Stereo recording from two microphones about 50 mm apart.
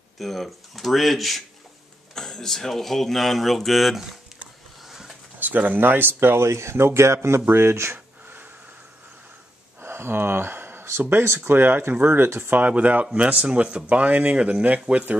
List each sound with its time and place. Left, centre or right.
0.2 s speech: centre
4.8 s a sound: centre
5.4 s speech: right
9.8 s speech: right
11.9 s speech: right
12.3 s speech: right
12.5 s speech: right